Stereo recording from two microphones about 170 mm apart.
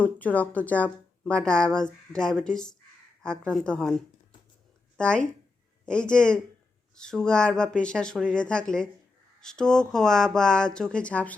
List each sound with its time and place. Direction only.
0.0 s a woman's voice: 10° left (ahead or behind)
4.9 s a woman's voice: 5° left (ahead or behind)